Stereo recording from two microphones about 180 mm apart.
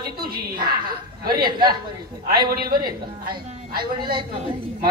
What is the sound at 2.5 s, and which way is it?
A man's voice, 55° right (ahead or behind).